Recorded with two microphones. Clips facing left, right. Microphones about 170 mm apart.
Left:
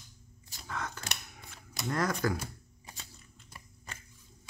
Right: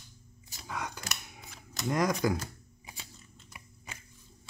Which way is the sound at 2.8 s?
10° right (ahead or behind).